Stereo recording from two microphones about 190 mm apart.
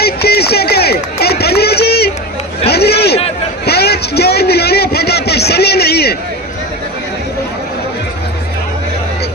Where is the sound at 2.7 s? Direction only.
60° left (ahead or behind).